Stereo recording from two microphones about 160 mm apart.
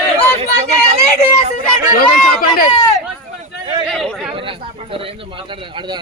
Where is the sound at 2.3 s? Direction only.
65° left (ahead or behind).